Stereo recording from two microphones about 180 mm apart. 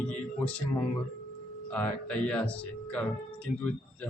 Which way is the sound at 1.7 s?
5° left (ahead or behind).